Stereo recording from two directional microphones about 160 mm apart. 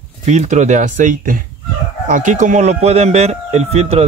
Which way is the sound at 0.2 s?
45° right (ahead or behind).